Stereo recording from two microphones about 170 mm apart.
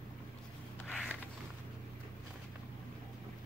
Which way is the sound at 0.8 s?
5° left (ahead or behind).